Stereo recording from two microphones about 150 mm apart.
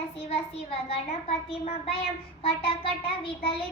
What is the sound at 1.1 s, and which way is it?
Child singing, 40° left (ahead or behind).